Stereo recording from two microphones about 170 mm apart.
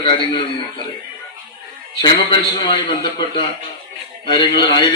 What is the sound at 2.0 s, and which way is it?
Speech, 25° left (ahead or behind).